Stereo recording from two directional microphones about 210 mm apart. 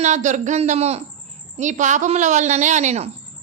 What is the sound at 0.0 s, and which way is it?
A woman's voice, 35° right (ahead or behind).